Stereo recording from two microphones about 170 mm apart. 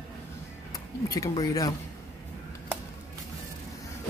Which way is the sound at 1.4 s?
20° left (ahead or behind).